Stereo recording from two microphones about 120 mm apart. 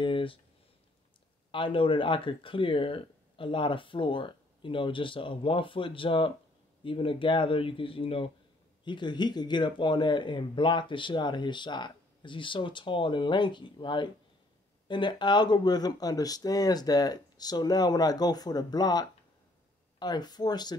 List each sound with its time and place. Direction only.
0.0 s speech: 45° left (ahead or behind)
1.5 s speech: 45° left (ahead or behind)
8.8 s speech: 40° left (ahead or behind)